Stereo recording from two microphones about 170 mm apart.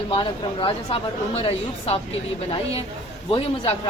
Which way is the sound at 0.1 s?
30° left (ahead or behind).